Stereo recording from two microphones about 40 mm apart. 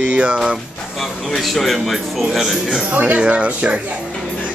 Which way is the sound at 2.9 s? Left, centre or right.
Right.